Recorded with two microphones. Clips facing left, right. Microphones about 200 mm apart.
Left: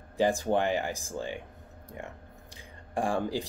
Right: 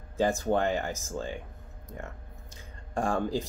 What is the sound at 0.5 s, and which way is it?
Speech, 15° left (ahead or behind).